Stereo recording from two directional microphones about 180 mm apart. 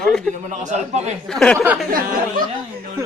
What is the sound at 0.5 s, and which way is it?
Speech, 40° right (ahead or behind).